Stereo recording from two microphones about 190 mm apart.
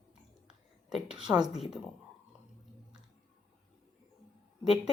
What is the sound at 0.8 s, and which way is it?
Speech, 5° right (ahead or behind).